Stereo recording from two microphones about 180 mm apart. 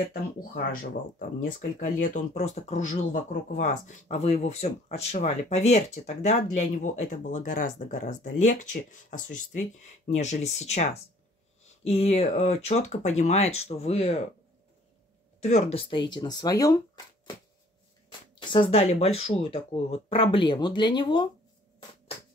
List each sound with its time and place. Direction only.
0.0 s speech: 55° left (ahead or behind)
1.4 s speech: 45° left (ahead or behind)
15.4 s speech: 35° left (ahead or behind); by 17.4 s 20° left (ahead or behind)
18.4 s speech: 25° left (ahead or behind)